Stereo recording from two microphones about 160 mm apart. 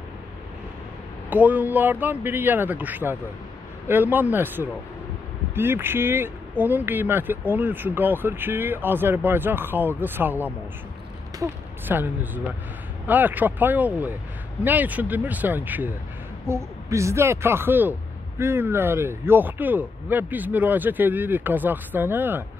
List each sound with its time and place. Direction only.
1.3 s a man's voice: 10° right (ahead or behind)